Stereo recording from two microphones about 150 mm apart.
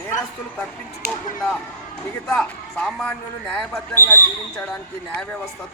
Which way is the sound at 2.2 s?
5° left (ahead or behind).